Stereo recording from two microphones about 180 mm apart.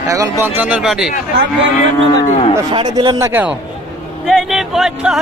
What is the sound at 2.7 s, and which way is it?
Speech, 25° right (ahead or behind).